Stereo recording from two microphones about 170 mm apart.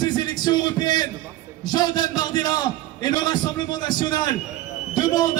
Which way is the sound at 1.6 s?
25° left (ahead or behind).